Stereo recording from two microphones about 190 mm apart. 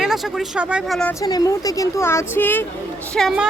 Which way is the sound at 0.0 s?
Centre (ahead or behind).